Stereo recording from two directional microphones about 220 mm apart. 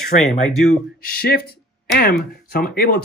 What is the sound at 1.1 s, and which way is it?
Speech, 45° left (ahead or behind).